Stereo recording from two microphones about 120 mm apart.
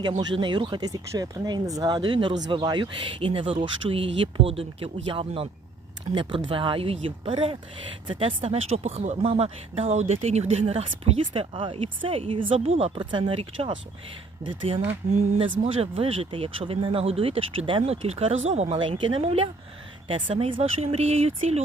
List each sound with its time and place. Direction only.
0.0 s speech: 35° right (ahead or behind)
15.4 s speech: 55° right (ahead or behind)
18.8 s speech: 45° right (ahead or behind); by 21.6 s 60° right (ahead or behind)